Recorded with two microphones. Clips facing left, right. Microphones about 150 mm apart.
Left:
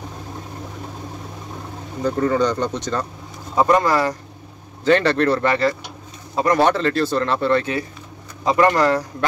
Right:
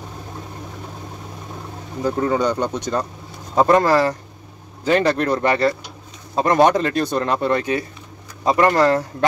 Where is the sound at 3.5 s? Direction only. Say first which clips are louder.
Right 2 dB; 30° right (ahead or behind).